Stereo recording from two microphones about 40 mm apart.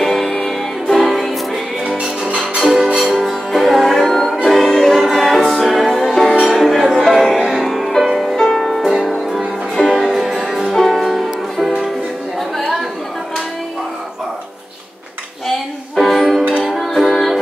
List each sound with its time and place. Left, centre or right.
0.0 s music: centre
2.0 s music: centre
3.0 s music: centre
7.3 s music: centre
7.6 s music: centre
10.7 s music: centre
16.0 s music: centre